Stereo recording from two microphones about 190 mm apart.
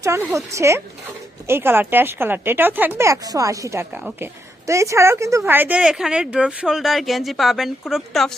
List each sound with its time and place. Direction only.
0.0 s speech: 15° right (ahead or behind)